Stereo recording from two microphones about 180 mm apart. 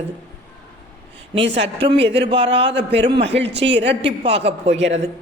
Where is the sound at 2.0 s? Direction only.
75° right (ahead or behind).